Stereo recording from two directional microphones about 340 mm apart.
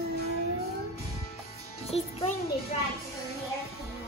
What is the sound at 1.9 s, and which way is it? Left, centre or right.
Music, centre.